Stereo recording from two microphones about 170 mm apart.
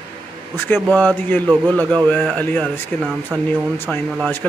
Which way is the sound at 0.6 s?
10° left (ahead or behind).